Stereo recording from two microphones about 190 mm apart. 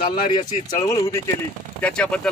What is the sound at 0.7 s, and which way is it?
Speech, 20° left (ahead or behind).